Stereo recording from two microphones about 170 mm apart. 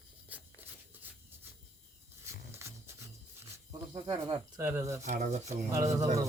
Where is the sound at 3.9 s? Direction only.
25° right (ahead or behind).